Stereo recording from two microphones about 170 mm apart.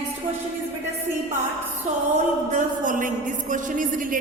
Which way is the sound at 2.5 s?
50° right (ahead or behind).